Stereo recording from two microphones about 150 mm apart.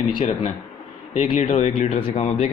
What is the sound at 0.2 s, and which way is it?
A man's voice, 50° left (ahead or behind).